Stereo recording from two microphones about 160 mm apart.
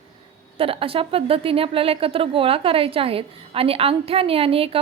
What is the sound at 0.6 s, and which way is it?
A woman's voice, 35° right (ahead or behind).